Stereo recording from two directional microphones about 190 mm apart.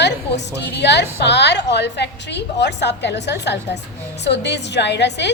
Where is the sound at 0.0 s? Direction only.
65° left (ahead or behind).